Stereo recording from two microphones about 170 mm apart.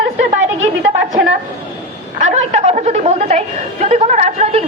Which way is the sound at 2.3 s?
40° right (ahead or behind).